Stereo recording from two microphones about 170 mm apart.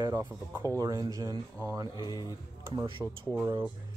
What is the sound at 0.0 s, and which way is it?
Speech, 15° right (ahead or behind).